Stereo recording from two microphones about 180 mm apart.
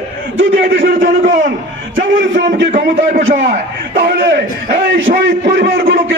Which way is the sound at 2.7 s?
50° right (ahead or behind).